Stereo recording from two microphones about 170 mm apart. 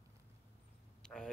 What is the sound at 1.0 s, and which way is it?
Vehicle, 5° left (ahead or behind).